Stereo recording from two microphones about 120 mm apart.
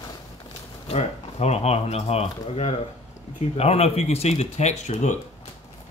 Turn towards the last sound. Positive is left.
turn(degrees=75)  # may be behind; listen again after turning